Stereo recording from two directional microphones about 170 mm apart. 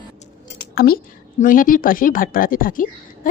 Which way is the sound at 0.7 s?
60° left (ahead or behind).